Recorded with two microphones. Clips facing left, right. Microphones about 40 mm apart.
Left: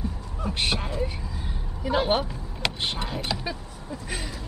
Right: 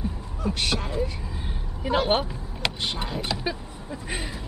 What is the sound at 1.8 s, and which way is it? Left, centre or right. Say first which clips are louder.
Speech: right 1 dB; right.